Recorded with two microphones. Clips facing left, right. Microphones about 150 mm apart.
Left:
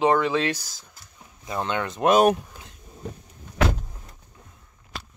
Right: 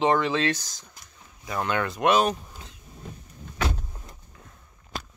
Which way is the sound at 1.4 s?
25° left (ahead or behind).